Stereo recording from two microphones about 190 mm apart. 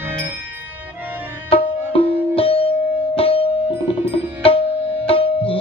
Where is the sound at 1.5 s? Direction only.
30° left (ahead or behind).